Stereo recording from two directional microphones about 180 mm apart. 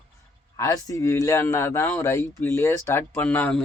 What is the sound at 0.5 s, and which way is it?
Speech, 20° left (ahead or behind).